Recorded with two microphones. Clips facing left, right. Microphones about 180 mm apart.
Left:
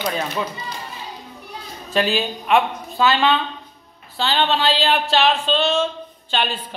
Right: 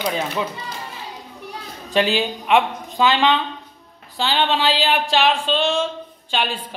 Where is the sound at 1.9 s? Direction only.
15° right (ahead or behind).